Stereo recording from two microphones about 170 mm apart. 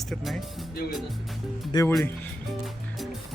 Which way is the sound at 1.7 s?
20° left (ahead or behind).